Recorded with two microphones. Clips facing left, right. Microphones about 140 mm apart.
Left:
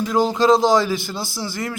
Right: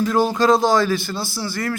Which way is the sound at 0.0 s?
20° left (ahead or behind).